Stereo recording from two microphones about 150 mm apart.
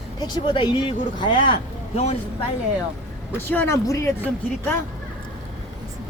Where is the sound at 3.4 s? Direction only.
15° left (ahead or behind).